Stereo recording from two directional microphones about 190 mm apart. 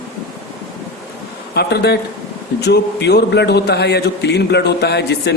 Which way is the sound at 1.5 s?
60° left (ahead or behind).